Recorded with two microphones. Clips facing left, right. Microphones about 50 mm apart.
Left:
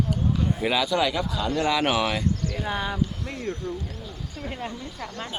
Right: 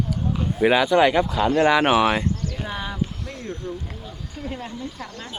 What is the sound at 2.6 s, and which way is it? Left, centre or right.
Speech, centre.